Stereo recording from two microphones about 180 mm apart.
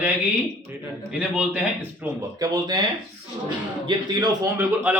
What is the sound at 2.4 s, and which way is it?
Speech, 25° right (ahead or behind).